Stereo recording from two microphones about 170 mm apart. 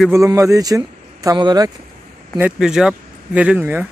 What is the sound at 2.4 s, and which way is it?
Speech, 5° right (ahead or behind).